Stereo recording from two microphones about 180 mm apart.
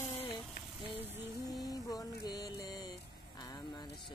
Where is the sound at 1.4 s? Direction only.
20° left (ahead or behind).